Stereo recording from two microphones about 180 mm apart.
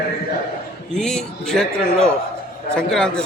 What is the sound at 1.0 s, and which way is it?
A man's voice, 5° left (ahead or behind).